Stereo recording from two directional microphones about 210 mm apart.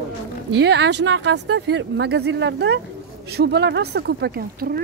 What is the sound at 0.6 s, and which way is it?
Speech, 55° right (ahead or behind).